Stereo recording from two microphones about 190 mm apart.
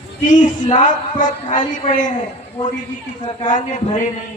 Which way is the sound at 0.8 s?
40° left (ahead or behind).